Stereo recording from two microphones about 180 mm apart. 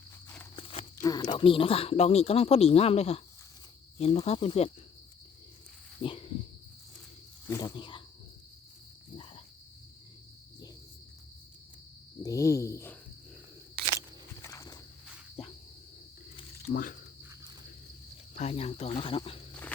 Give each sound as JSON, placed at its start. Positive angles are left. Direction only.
{"t": 0.5, "sound": "livestock", "side_deg": 30}
{"t": 1.0, "sound": "speech", "side_deg": 20}
{"t": 6.0, "sound": "cricket", "side_deg": 30}
{"t": 7.4, "sound": "speech", "side_deg": 20}
{"t": 12.2, "sound": "speech", "side_deg": 20}
{"t": 14.4, "sound": "walk", "side_deg": 20}
{"t": 16.7, "sound": "speech", "side_deg": 50}
{"t": 18.3, "sound": "speech", "side_deg": 35}